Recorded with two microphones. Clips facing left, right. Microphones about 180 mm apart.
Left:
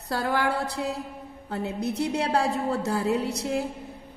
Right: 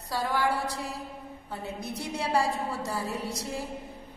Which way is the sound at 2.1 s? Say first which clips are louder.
Right 1 dB; 60° left (ahead or behind).